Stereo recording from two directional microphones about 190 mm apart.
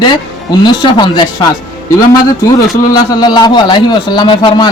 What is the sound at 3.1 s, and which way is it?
A man's voice, 20° left (ahead or behind).